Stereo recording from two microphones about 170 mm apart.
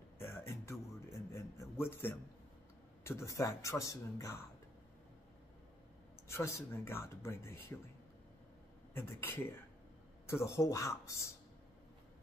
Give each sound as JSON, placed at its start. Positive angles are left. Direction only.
{"t": 0.2, "sound": "a sound", "side_deg": 15}
{"t": 3.0, "sound": "speech", "side_deg": 15}
{"t": 6.2, "sound": "speech", "side_deg": 15}
{"t": 8.9, "sound": "speech", "side_deg": 15}